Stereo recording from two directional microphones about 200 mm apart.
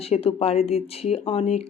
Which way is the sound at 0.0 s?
30° left (ahead or behind).